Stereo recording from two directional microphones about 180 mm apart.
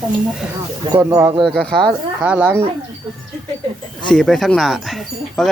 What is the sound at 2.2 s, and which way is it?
Speech, 5° right (ahead or behind).